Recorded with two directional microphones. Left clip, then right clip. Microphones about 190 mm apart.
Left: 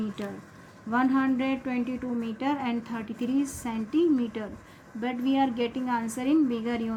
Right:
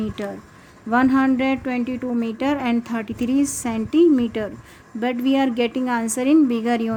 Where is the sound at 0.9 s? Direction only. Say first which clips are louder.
Right 8 dB; 60° right (ahead or behind).